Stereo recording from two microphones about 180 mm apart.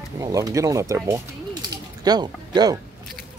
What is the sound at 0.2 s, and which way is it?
Speech, 20° right (ahead or behind).